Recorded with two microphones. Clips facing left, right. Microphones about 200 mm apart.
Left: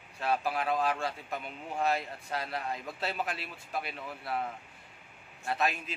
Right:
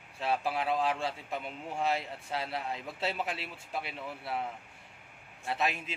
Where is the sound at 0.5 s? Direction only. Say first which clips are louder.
Even; 25° right (ahead or behind).